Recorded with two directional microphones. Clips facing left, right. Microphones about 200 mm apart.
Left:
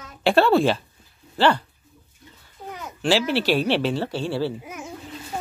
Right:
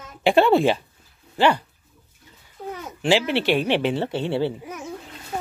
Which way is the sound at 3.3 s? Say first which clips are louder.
Even; 20° right (ahead or behind).